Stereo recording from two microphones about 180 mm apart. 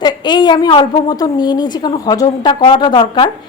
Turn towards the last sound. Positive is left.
turn(degrees=25)  # may be behind; listen again after turning